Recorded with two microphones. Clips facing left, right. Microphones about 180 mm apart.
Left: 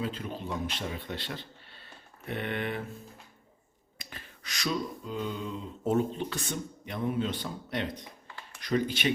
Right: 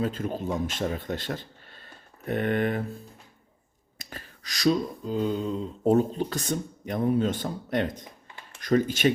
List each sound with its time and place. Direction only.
0.0 s a man's voice: 45° right (ahead or behind)
3.9 s finger snapping: 40° right (ahead or behind)
8.6 s speech: 45° right (ahead or behind)